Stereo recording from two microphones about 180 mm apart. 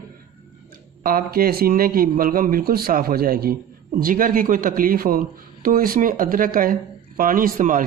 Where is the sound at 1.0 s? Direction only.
55° right (ahead or behind).